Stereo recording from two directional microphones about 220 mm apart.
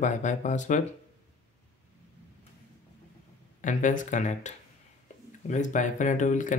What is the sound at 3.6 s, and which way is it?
Speech, 35° left (ahead or behind).